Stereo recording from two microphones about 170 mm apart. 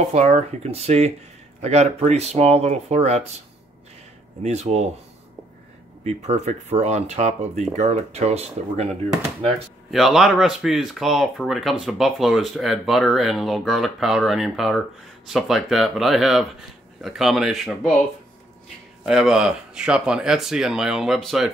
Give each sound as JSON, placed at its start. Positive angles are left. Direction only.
{"t": 0.1, "sound": "speech", "side_deg": -40}
{"t": 4.4, "sound": "speech", "side_deg": -40}
{"t": 6.0, "sound": "speech", "side_deg": -40}
{"t": 9.8, "sound": "speech", "side_deg": 0}
{"t": 19.0, "sound": "speech", "side_deg": -5}